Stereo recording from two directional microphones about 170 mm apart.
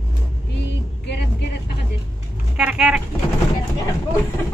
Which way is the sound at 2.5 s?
5° right (ahead or behind).